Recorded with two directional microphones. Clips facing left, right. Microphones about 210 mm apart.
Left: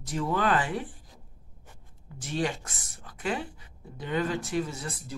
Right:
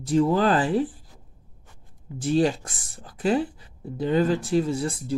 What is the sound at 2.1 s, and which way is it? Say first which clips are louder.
Speech: right 9 dB; 30° right (ahead or behind).